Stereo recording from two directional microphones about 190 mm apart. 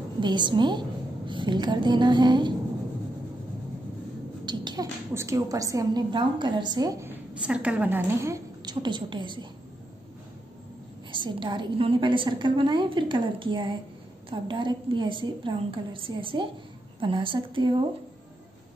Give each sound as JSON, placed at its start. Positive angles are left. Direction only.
{"t": 0.2, "sound": "a woman's voice", "side_deg": -25}
{"t": 4.5, "sound": "a woman's voice", "side_deg": -20}
{"t": 11.1, "sound": "a woman's voice", "side_deg": -25}